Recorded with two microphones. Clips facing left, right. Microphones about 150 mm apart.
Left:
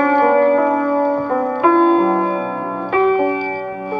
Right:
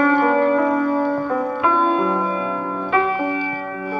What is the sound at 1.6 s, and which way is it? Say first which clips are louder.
Music: left 8 dB; 55° left (ahead or behind).